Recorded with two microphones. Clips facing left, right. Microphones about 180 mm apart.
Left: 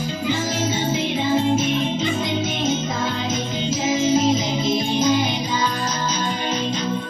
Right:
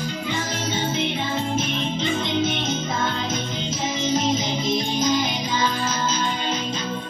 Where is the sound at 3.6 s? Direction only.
5° left (ahead or behind).